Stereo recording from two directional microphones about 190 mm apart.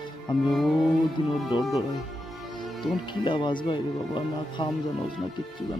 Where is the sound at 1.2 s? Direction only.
25° left (ahead or behind).